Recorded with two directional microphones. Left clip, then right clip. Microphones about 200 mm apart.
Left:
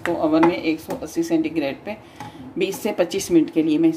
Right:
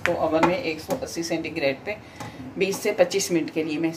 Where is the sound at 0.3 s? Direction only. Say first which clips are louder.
Left 4 dB; 45° left (ahead or behind).